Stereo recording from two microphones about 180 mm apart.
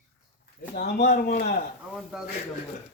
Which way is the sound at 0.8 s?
65° left (ahead or behind).